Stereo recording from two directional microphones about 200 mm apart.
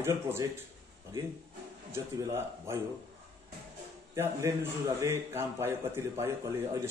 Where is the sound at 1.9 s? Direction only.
10° right (ahead or behind).